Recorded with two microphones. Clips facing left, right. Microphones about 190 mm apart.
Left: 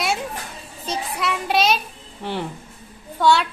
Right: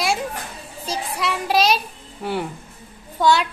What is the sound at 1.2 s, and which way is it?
Speech, centre (ahead or behind).